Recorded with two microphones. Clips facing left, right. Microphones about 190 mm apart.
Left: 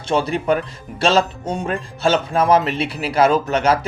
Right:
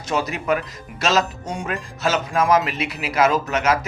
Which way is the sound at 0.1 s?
30° left (ahead or behind).